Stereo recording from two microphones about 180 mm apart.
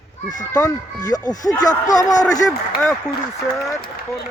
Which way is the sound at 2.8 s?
5° left (ahead or behind).